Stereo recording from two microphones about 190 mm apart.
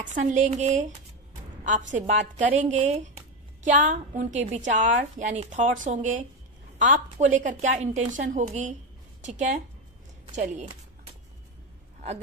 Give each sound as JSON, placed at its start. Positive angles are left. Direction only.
{"t": 0.0, "sound": "a woman's voice", "side_deg": -40}